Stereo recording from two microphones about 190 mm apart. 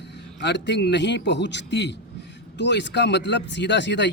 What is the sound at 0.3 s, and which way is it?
Speech, 65° left (ahead or behind).